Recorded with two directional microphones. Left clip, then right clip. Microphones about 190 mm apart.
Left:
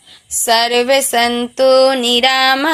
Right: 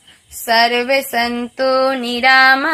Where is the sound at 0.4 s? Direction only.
40° left (ahead or behind).